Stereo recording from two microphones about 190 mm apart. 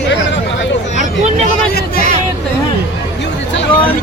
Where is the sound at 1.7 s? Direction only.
50° left (ahead or behind).